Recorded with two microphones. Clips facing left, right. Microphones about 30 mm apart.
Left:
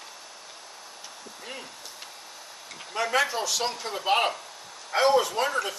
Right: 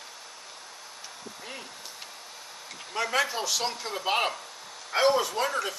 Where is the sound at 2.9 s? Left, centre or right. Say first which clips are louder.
Left 2 dB; centre.